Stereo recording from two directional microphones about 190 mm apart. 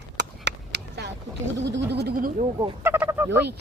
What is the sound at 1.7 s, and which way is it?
Speech, 65° right (ahead or behind).